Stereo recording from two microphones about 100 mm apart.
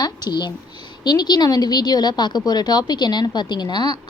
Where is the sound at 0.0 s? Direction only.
45° left (ahead or behind).